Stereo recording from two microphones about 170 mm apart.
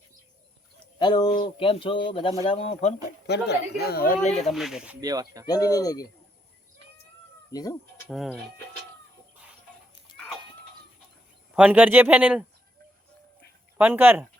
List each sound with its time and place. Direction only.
0.9 s speech: 25° left (ahead or behind)
3.2 s speech: 80° left; by 4.4 s 50° left (ahead or behind)
4.4 s speech: centre (ahead or behind)
4.9 s speech: 20° right (ahead or behind)
5.5 s speech: 20° left (ahead or behind)
7.5 s speech: 20° left (ahead or behind)
8.0 s speech: 5° right (ahead or behind)
10.1 s a sound: 25° left (ahead or behind)
11.5 s speech: 10° right (ahead or behind)
13.7 s speech: 10° right (ahead or behind)